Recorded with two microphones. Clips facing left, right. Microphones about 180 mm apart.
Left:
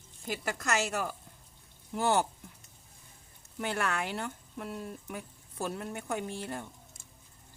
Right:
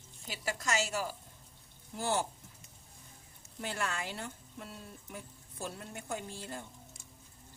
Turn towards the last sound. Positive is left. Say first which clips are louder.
# left 4 dB
turn(degrees=65)  # may be behind; listen again after turning